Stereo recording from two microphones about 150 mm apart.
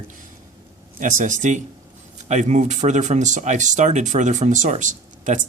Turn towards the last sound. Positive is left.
turn(degrees=-55)  # may be behind; listen again after turning